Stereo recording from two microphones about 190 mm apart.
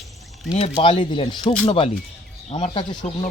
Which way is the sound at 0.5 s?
30° left (ahead or behind).